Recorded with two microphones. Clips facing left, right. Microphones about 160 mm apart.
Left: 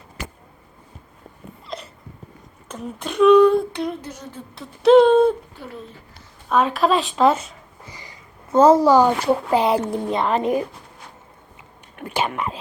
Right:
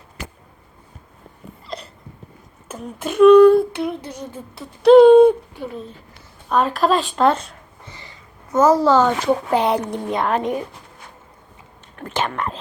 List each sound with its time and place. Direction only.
1.6 s hiccup: centre (ahead or behind)
2.6 s a sound: 5° right (ahead or behind)
5.0 s speech: 15° right (ahead or behind)
6.5 s speech: centre (ahead or behind)
8.4 s a woman's voice: 30° left (ahead or behind)
8.8 s a sound: 15° left (ahead or behind)
11.9 s speech: 10° left (ahead or behind)